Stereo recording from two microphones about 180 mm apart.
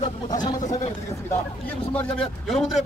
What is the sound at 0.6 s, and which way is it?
Speech, 40° left (ahead or behind).